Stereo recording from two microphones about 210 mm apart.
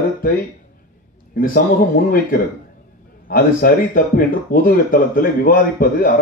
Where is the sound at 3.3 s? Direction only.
45° left (ahead or behind).